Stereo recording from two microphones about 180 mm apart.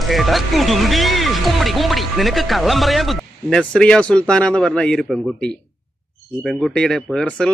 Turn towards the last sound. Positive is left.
turn(degrees=5)  # may be behind; listen again after turning